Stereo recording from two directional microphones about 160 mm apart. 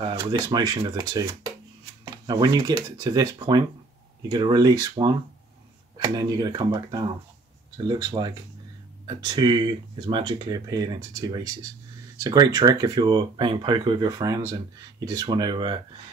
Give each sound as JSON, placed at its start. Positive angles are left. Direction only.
{"t": 0.0, "sound": "speech", "side_deg": -25}